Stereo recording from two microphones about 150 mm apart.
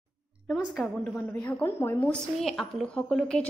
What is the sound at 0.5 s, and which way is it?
A woman's voice, 5° left (ahead or behind).